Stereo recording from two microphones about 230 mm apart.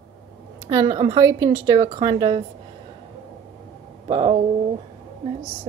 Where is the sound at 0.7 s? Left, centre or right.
Centre.